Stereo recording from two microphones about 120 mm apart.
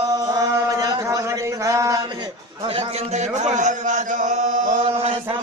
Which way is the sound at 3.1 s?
70° right (ahead or behind).